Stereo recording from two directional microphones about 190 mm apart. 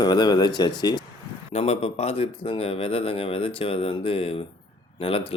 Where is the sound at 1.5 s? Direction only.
35° left (ahead or behind).